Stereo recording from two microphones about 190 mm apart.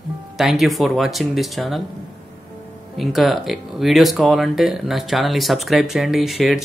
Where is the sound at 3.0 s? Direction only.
Centre (ahead or behind).